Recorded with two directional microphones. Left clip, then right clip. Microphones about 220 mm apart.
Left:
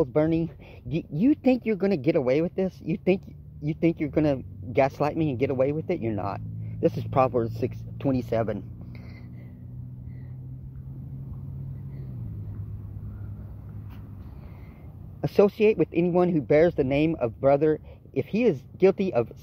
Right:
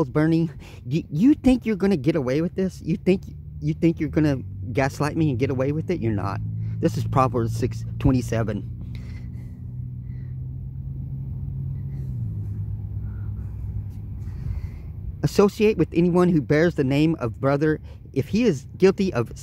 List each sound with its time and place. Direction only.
0.0 s speech: 20° right (ahead or behind)
15.2 s speech: 20° right (ahead or behind)